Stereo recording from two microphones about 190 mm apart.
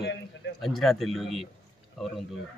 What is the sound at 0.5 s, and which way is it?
Speech, centre (ahead or behind).